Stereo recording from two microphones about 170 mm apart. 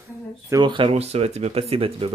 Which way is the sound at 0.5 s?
25° right (ahead or behind).